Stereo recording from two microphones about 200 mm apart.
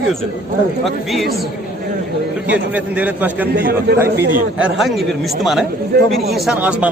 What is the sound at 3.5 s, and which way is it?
Speech, 55° right (ahead or behind).